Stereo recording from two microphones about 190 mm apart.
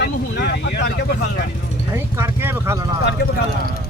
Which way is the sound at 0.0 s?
65° left (ahead or behind).